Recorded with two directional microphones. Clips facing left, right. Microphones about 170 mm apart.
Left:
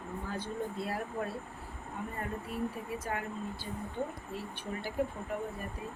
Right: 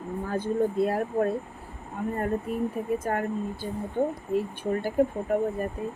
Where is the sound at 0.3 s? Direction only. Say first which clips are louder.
Right 12 dB; 50° right (ahead or behind).